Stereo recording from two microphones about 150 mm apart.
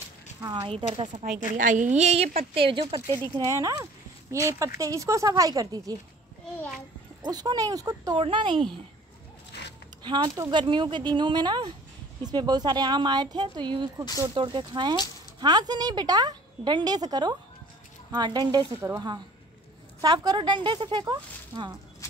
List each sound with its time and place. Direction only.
0.4 s speech: 30° right (ahead or behind)
1.6 s a woman's voice: 60° right (ahead or behind)
2.0 s speech: 45° right (ahead or behind)
3.3 s speech: 20° right (ahead or behind)
7.2 s speech: 25° right (ahead or behind)
10.0 s speech: 30° right (ahead or behind)
18.8 s a woman's voice: 15° right (ahead or behind)
20.0 s speech: 25° right (ahead or behind)